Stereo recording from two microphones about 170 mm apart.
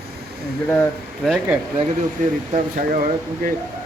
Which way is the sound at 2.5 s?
50° right (ahead or behind).